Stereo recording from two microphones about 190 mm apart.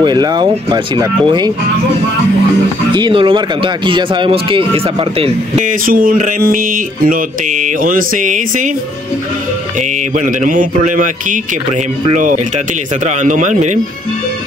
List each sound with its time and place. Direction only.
0.0 s speech: 20° right (ahead or behind)
2.9 s speech: 25° right (ahead or behind)
5.7 s speech: 50° right (ahead or behind)
10.1 s speech: 45° right (ahead or behind)